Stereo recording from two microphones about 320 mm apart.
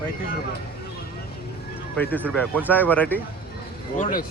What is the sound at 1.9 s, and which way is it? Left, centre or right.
Speech, centre.